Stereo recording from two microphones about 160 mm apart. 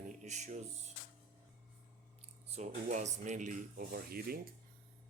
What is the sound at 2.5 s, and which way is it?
Speech, 40° right (ahead or behind).